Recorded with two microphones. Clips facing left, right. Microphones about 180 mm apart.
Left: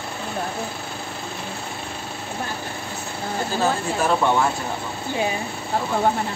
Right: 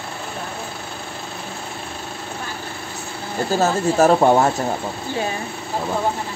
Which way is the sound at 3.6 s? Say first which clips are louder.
Right 7 dB; 40° right (ahead or behind).